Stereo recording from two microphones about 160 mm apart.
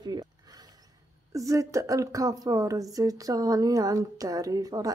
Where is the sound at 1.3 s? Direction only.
20° right (ahead or behind).